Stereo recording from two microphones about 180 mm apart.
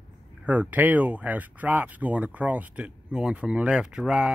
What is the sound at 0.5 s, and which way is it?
Speech, 10° right (ahead or behind).